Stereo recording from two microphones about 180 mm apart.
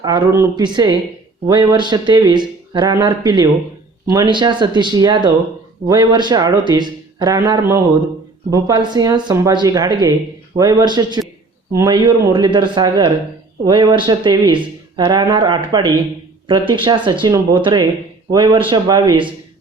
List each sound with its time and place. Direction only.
0.0 s speech: 20° right (ahead or behind)